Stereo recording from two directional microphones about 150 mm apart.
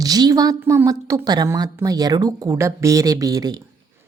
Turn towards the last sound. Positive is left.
turn(degrees=-25)  # may be behind; listen again after turning